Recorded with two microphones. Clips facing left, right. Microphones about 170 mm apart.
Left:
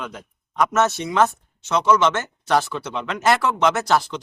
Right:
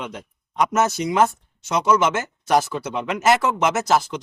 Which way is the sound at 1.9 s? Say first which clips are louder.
Left 1 dB; 10° right (ahead or behind).